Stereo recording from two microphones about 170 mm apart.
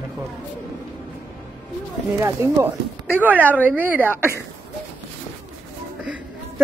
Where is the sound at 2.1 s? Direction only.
15° right (ahead or behind).